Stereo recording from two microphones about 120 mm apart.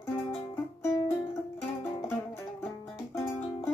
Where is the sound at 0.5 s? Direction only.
20° left (ahead or behind).